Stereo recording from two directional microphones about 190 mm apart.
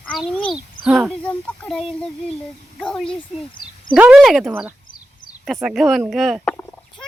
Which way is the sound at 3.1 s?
25° left (ahead or behind).